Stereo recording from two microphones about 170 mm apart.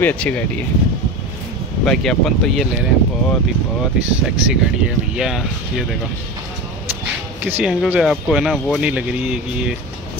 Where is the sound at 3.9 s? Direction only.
5° right (ahead or behind).